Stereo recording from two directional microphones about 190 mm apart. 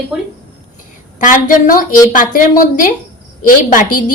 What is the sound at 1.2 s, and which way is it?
A woman's voice, 45° left (ahead or behind).